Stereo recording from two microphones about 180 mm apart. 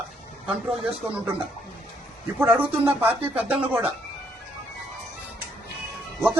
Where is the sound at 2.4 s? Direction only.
10° right (ahead or behind).